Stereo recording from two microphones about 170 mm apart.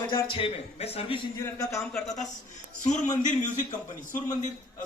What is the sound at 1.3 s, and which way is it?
Speech, 20° left (ahead or behind).